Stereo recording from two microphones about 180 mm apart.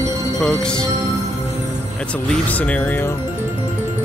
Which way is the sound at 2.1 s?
10° left (ahead or behind).